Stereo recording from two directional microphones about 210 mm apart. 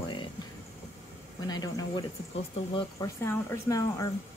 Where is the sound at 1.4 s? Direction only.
15° left (ahead or behind).